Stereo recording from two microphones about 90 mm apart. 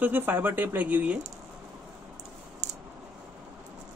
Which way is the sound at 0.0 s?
20° right (ahead or behind).